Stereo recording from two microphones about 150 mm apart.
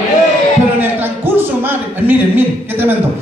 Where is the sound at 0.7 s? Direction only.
15° right (ahead or behind).